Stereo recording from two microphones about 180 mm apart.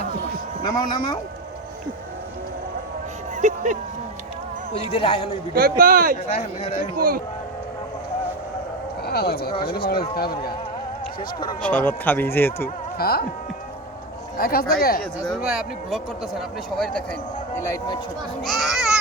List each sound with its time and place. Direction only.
0.7 s speech: 25° left (ahead or behind)
3.3 s speech: 45° right (ahead or behind)
4.7 s speech: 30° left (ahead or behind)
5.5 s speech: 55° right (ahead or behind)
6.2 s speech: 40° left (ahead or behind)
6.9 s speech: 50° right (ahead or behind)
9.0 s speech: 60° left (ahead or behind)
11.6 s a man's voice: 10° left (ahead or behind)
12.6 s speech: 60° left (ahead or behind)
14.3 s speech: 55° left (ahead or behind)
15.3 s speech: 5° right (ahead or behind)
18.4 s speech: centre (ahead or behind)